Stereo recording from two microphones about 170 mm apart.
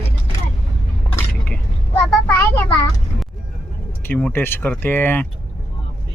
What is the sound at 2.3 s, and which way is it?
Speech, 15° left (ahead or behind).